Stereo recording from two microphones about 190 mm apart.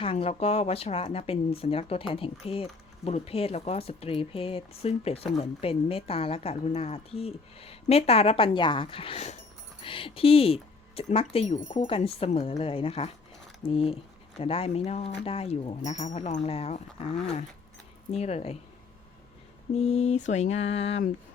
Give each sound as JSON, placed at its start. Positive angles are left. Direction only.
{"t": 0.0, "sound": "speech", "side_deg": 30}
{"t": 18.1, "sound": "speech", "side_deg": 35}
{"t": 19.7, "sound": "speech", "side_deg": 35}